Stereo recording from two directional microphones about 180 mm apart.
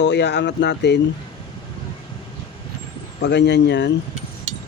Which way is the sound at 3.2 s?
70° left (ahead or behind).